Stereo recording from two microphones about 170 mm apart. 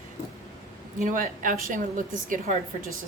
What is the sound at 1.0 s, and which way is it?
A woman's voice, 50° right (ahead or behind).